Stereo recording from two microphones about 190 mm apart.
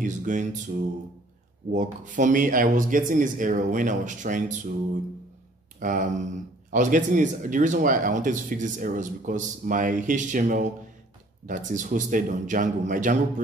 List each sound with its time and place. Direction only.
0.0 s a sound: 40° right (ahead or behind)
1.7 s speech: 40° right (ahead or behind)
5.8 s speech: 45° right (ahead or behind)